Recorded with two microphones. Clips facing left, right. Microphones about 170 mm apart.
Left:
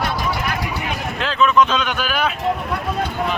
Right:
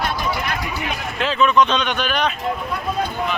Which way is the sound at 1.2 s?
Centre (ahead or behind).